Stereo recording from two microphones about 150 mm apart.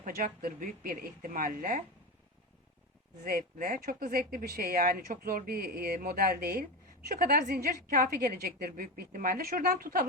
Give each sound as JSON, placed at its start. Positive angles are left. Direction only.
{"t": 0.0, "sound": "speech", "side_deg": -65}
{"t": 3.2, "sound": "speech", "side_deg": -85}